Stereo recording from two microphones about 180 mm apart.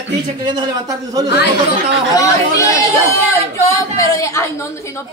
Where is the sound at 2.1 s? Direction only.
15° left (ahead or behind).